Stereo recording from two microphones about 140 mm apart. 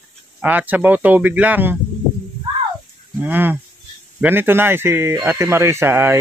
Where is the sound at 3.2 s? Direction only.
10° right (ahead or behind).